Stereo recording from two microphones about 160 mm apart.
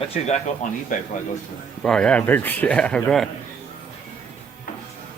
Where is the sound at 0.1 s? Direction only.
50° left (ahead or behind).